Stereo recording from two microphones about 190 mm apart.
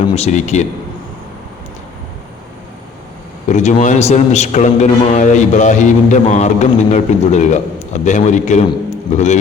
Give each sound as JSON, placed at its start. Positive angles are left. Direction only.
{"t": 0.0, "sound": "a man's voice", "side_deg": 35}
{"t": 3.5, "sound": "a man's voice", "side_deg": 40}